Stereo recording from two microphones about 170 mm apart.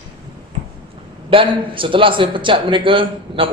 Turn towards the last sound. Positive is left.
turn(degrees=-30)  # may be behind; listen again after turning